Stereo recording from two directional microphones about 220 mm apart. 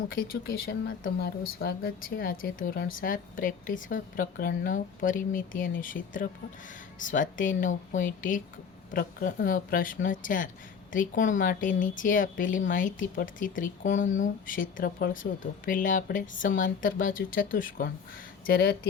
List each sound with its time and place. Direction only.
0.1 s speech: 40° left (ahead or behind)